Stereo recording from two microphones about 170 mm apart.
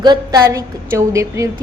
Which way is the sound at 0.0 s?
25° right (ahead or behind).